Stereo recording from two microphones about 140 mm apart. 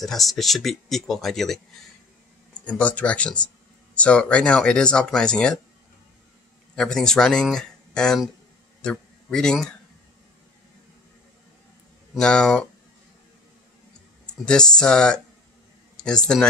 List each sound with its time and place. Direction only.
0.0 s speech: centre (ahead or behind)
6.7 s a man's voice: 5° left (ahead or behind)
12.2 s speech: 5° left (ahead or behind)
14.2 s speech: 5° left (ahead or behind)